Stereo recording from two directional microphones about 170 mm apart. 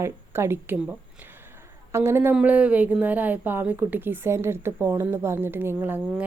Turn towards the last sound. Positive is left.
turn(degrees=-10)  # may be behind; listen again after turning